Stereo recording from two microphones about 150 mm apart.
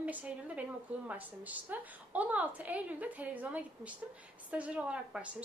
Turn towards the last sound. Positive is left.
turn(degrees=-10)  # may be behind; listen again after turning